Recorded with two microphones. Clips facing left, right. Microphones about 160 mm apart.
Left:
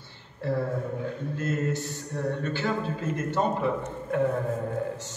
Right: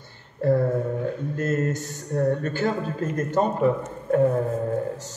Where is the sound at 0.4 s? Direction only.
45° right (ahead or behind).